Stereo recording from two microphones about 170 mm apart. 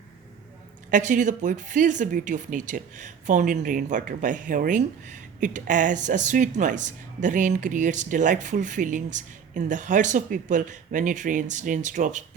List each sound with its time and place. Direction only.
0.9 s speech: 50° right (ahead or behind)